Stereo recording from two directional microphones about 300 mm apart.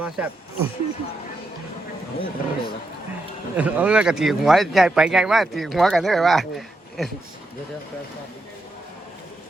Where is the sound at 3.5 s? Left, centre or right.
Centre.